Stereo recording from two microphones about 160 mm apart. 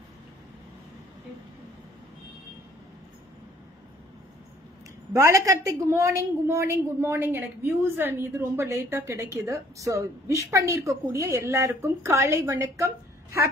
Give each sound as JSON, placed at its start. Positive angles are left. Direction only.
{"t": 5.1, "sound": "a woman's voice", "side_deg": -20}